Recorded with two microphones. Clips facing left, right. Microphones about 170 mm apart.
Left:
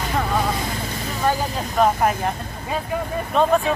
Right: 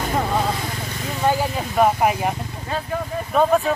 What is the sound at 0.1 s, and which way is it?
Speech, 15° right (ahead or behind).